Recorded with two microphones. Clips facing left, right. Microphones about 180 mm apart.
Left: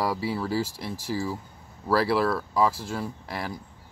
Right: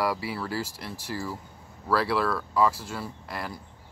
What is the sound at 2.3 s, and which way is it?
Speech, 15° left (ahead or behind).